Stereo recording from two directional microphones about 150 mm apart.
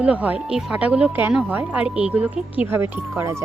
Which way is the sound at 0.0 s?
10° right (ahead or behind).